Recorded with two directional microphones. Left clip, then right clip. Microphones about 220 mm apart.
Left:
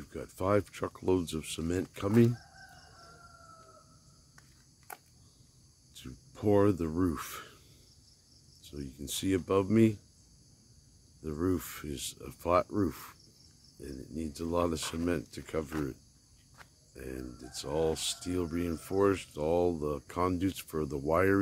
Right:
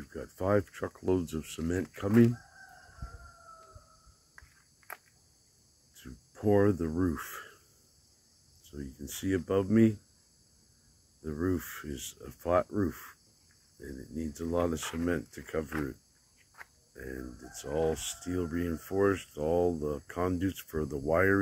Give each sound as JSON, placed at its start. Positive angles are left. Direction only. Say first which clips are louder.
{"t": 0.0, "sound": "speech", "louder": "even", "side_deg": 10}
{"t": 6.0, "sound": "speech", "louder": "right 1 dB", "side_deg": 10}
{"t": 8.6, "sound": "speech", "louder": "left 2 dB", "side_deg": 20}
{"t": 11.2, "sound": "speech", "louder": "even", "side_deg": 15}
{"t": 15.7, "sound": "speech", "louder": "right 1 dB", "side_deg": 5}
{"t": 16.9, "sound": "speech", "louder": "even", "side_deg": 15}